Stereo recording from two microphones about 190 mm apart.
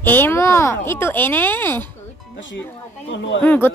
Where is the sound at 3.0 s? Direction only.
70° left (ahead or behind).